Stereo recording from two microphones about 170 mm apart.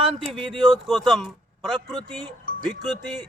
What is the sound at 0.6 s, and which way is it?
Speech, centre (ahead or behind).